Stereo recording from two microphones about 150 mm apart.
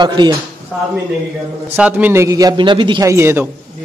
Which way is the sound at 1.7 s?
10° right (ahead or behind).